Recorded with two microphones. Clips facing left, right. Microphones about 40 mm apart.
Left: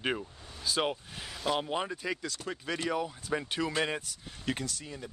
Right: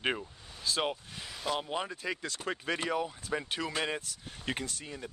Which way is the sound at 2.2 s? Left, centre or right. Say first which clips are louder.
Right 2 dB; right.